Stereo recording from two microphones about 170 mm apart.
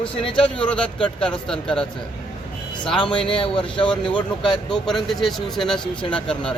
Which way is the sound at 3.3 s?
30° left (ahead or behind).